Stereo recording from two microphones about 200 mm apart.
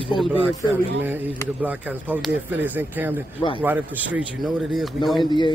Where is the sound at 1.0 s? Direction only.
10° right (ahead or behind).